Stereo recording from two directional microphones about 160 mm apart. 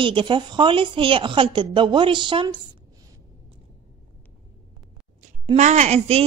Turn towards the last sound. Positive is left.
turn(degrees=-40)  # may be behind; listen again after turning